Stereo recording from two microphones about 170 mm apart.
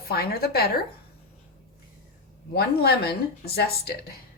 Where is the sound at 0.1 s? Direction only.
65° left (ahead or behind).